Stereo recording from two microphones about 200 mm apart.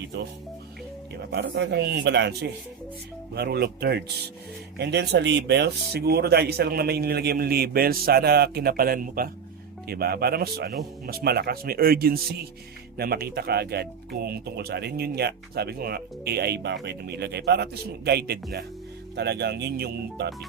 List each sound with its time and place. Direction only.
0.1 s speech: 60° right (ahead or behind)